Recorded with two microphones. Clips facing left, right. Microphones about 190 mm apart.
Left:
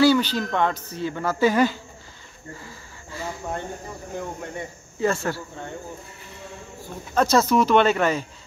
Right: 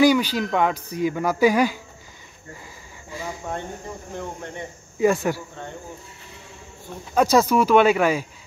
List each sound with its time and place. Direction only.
0.0 s speech: 10° right (ahead or behind)
2.6 s insect: 15° right (ahead or behind)
5.0 s speech: 15° right (ahead or behind)
7.2 s speech: 10° right (ahead or behind)